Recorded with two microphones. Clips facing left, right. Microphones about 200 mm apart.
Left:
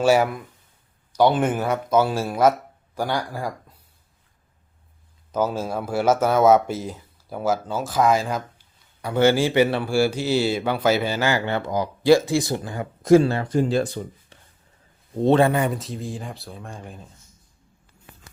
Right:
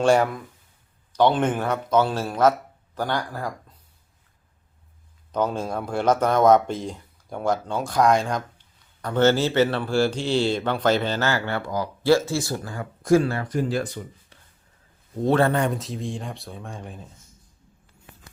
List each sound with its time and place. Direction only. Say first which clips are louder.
0.0 s speech: left 1 dB; 5° left (ahead or behind)
5.3 s speech: left 1 dB; 5° left (ahead or behind); by 15.4 s 25° left (ahead or behind)
15.4 s speech: left 1 dB; 5° left (ahead or behind)